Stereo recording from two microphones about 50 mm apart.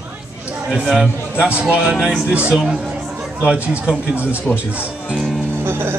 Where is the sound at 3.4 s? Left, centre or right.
Right.